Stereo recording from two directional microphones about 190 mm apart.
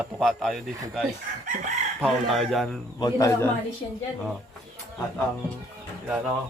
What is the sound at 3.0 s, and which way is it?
Speech, 15° left (ahead or behind).